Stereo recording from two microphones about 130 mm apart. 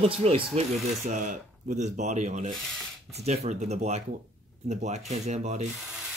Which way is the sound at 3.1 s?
60° right (ahead or behind).